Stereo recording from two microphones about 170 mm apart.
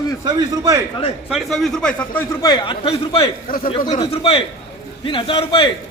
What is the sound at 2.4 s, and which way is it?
A man's voice, 25° left (ahead or behind).